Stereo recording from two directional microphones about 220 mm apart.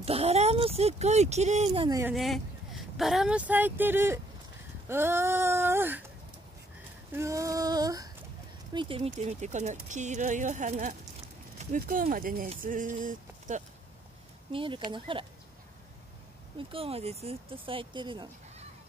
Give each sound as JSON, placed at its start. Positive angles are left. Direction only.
{"t": 0.0, "sound": "speech", "side_deg": -25}
{"t": 2.1, "sound": "speech", "side_deg": 0}
{"t": 4.8, "sound": "a sound", "side_deg": -10}
{"t": 7.2, "sound": "a sound", "side_deg": -15}
{"t": 8.7, "sound": "speech", "side_deg": -25}
{"t": 14.5, "sound": "speech", "side_deg": -25}
{"t": 16.5, "sound": "speech", "side_deg": -25}